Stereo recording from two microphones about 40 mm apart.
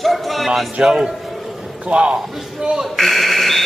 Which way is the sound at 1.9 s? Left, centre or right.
Right.